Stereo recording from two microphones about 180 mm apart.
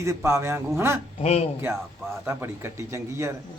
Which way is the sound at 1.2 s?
40° left (ahead or behind).